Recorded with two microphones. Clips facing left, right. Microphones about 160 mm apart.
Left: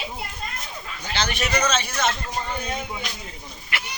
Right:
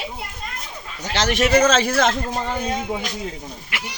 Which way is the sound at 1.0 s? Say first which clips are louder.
Right 7 dB; 85° right.